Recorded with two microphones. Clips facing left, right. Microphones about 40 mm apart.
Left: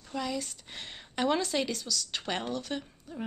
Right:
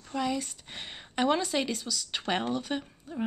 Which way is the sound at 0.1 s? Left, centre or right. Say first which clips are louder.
Right 3 dB; centre.